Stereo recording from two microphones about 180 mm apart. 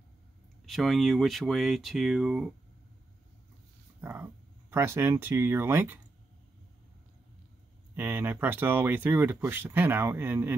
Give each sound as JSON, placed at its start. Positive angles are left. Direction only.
{"t": 0.7, "sound": "speech", "side_deg": 0}
{"t": 4.0, "sound": "speech", "side_deg": -10}
{"t": 7.9, "sound": "speech", "side_deg": -10}